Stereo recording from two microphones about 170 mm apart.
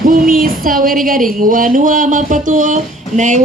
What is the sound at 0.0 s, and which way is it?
Speech, 55° right (ahead or behind).